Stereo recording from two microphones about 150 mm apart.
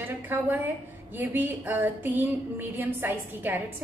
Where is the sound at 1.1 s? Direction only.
15° right (ahead or behind).